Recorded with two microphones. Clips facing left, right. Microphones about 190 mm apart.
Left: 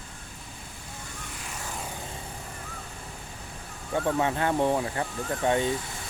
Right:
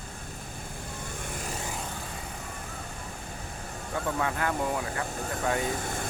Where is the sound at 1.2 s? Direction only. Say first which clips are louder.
Right 5 dB; 50° right (ahead or behind).